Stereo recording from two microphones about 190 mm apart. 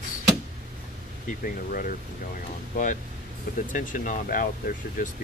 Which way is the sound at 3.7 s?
45° left (ahead or behind).